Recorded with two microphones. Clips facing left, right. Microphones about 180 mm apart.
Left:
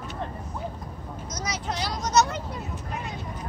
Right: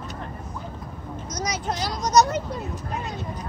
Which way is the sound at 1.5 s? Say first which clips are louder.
Right 2 dB; 45° right (ahead or behind).